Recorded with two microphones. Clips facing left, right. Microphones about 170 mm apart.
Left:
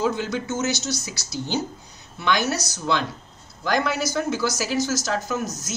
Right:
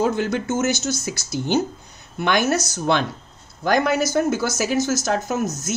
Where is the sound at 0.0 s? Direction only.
50° right (ahead or behind).